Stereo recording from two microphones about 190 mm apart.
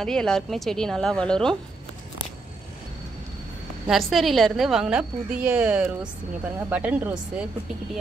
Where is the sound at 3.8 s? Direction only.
Centre (ahead or behind).